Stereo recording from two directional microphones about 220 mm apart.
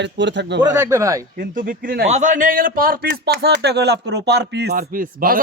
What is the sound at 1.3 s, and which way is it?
A man's voice, 40° right (ahead or behind).